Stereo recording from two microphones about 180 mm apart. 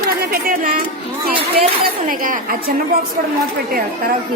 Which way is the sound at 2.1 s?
50° right (ahead or behind).